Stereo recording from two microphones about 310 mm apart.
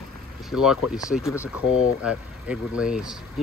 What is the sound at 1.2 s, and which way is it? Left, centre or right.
Speech, centre.